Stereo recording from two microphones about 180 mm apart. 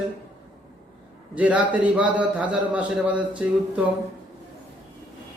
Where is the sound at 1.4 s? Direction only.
10° right (ahead or behind).